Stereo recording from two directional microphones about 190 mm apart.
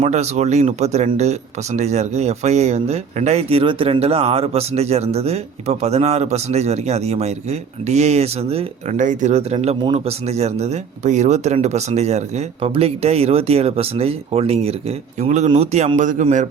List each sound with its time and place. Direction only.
0.0 s speech: 35° right (ahead or behind)